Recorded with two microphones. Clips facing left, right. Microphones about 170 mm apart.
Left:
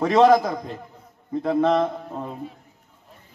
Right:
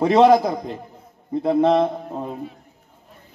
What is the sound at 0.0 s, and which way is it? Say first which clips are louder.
Speech: right 2 dB; 25° right (ahead or behind).